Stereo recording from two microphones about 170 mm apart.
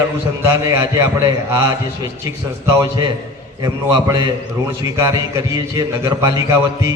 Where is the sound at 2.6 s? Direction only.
25° right (ahead or behind).